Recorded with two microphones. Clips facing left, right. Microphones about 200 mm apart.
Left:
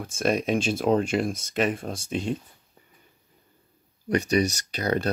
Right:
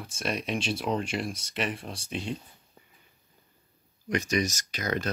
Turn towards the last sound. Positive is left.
turn(degrees=35)  # may be behind; listen again after turning